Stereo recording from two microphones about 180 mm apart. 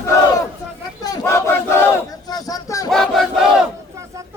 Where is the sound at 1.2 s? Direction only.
15° left (ahead or behind).